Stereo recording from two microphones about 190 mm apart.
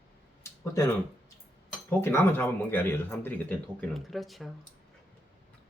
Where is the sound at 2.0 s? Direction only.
15° left (ahead or behind).